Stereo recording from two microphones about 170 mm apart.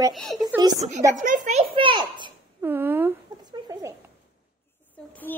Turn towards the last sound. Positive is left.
turn(degrees=10)  # may be behind; listen again after turning